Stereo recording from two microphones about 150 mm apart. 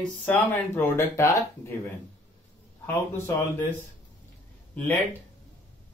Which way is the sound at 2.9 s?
15° left (ahead or behind).